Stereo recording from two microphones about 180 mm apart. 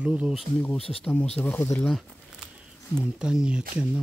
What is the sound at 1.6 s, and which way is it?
Speech, 15° left (ahead or behind).